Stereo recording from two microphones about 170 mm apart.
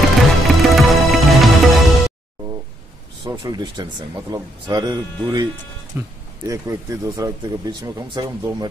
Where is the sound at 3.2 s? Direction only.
25° right (ahead or behind).